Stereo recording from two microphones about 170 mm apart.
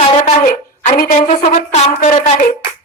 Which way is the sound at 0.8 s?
50° left (ahead or behind).